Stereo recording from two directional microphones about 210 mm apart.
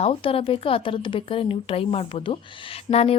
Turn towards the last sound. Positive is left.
turn(degrees=30)  # may be behind; listen again after turning